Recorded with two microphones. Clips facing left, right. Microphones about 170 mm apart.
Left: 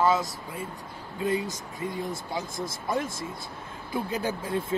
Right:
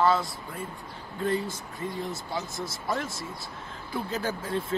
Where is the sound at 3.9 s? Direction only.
15° left (ahead or behind).